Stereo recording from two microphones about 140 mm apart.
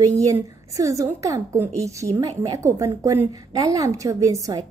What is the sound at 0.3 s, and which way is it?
A woman's voice, 25° right (ahead or behind).